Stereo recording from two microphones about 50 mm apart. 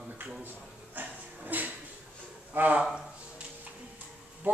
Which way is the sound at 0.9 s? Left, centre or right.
Right.